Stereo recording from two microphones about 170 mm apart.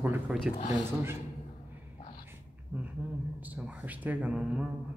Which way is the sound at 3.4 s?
10° right (ahead or behind).